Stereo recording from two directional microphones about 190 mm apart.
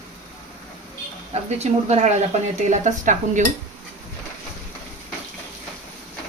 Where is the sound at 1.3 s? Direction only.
35° right (ahead or behind).